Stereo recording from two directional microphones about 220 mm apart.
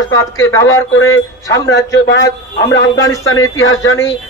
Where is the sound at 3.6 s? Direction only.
60° left (ahead or behind).